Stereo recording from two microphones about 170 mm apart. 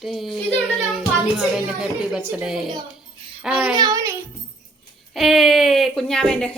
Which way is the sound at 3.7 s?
20° right (ahead or behind).